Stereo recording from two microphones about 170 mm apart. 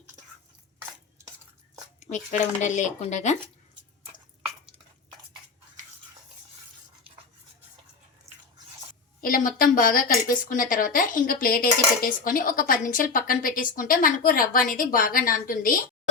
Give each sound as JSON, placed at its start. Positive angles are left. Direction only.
{"t": 2.0, "sound": "speech", "side_deg": 45}
{"t": 9.2, "sound": "a woman's voice", "side_deg": 55}